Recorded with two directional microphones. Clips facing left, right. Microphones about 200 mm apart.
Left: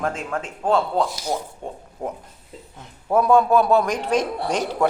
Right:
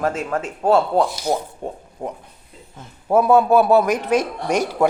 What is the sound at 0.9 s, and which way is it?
Speech, 55° right (ahead or behind).